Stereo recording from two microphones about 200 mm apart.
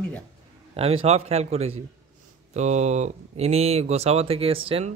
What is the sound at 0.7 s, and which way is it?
Speech, 30° right (ahead or behind).